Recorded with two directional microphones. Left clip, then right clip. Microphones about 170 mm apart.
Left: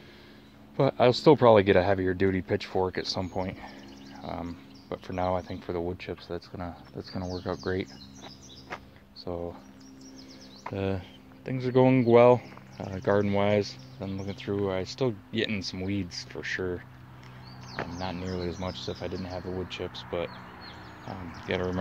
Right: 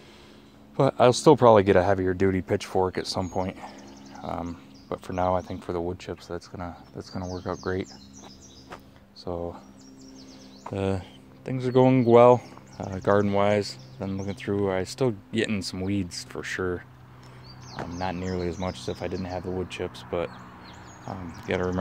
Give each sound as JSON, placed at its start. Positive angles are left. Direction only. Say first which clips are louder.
{"t": 0.7, "sound": "speech", "louder": "right 3 dB", "side_deg": -25}
{"t": 8.2, "sound": "a sound", "louder": "left 1 dB", "side_deg": 15}
{"t": 9.2, "sound": "speech", "louder": "right 3 dB", "side_deg": -25}
{"t": 10.7, "sound": "speech", "louder": "right 3 dB", "side_deg": -30}
{"t": 17.9, "sound": "speech", "louder": "right 8 dB", "side_deg": -40}